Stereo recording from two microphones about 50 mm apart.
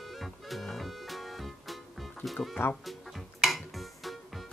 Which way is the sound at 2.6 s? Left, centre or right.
Left.